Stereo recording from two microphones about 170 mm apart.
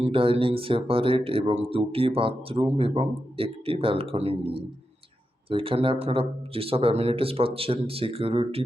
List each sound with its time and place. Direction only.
0.0 s a man's voice: 30° right (ahead or behind)